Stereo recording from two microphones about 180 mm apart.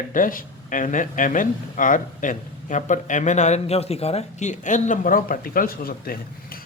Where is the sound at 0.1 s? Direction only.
50° left (ahead or behind).